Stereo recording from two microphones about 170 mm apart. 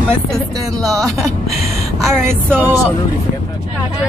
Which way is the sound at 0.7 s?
Centre (ahead or behind).